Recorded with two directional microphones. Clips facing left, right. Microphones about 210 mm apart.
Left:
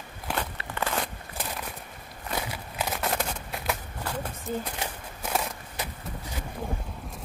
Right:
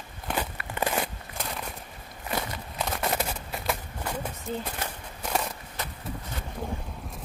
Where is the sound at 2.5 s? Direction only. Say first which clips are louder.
Even; 5° left (ahead or behind).